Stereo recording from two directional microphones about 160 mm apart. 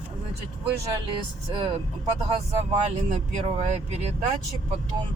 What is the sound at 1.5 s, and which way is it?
Music, 30° right (ahead or behind).